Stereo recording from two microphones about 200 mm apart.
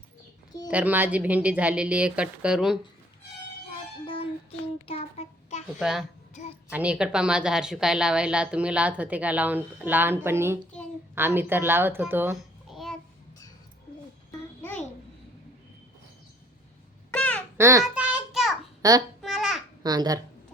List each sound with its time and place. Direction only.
0.7 s speech: 10° right (ahead or behind)
4.9 s child singing: 30° left (ahead or behind)
5.8 s a woman's voice: centre (ahead or behind)
6.3 s a sound: 35° left (ahead or behind)
6.7 s a woman's voice: 5° right (ahead or behind)
12.7 s a sound: centre (ahead or behind)
14.3 s babbling: 10° left (ahead or behind)
17.1 s babbling: 5° left (ahead or behind)
17.6 s speech: 15° right (ahead or behind)
17.8 s a sound: 5° right (ahead or behind)
18.8 s a child's voice: 15° right (ahead or behind)
19.2 s babbling: centre (ahead or behind)
19.8 s a child's voice: 20° right (ahead or behind)